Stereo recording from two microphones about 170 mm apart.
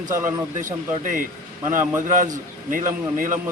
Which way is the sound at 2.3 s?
50° right (ahead or behind).